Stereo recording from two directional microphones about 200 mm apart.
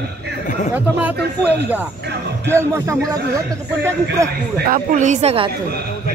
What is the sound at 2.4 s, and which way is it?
Speech, 10° right (ahead or behind).